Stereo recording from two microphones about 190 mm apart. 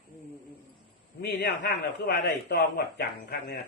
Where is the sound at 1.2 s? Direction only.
60° left (ahead or behind).